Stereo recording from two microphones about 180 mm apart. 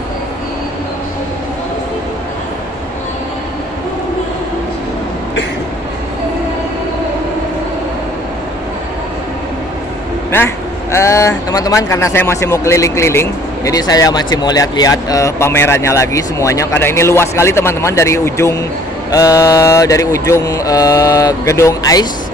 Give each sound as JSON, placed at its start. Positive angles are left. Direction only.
{"t": 10.3, "sound": "speech", "side_deg": 15}
{"t": 19.1, "sound": "mantra", "side_deg": 20}